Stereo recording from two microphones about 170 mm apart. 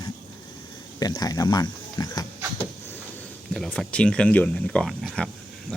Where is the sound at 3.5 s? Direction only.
Centre (ahead or behind).